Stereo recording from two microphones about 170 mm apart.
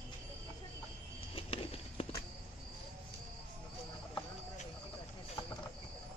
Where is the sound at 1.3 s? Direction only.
35° left (ahead or behind).